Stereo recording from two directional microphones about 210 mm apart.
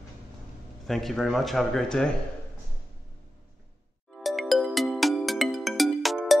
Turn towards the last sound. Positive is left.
turn(degrees=0)  # may be behind; listen again after turning